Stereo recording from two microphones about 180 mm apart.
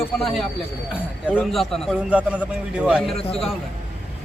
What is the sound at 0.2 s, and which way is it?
Speech, centre (ahead or behind).